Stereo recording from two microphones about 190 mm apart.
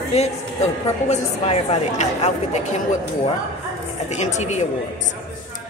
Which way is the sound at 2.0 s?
35° left (ahead or behind).